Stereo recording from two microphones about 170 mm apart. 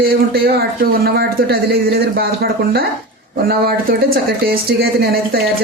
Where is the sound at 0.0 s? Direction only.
65° right (ahead or behind).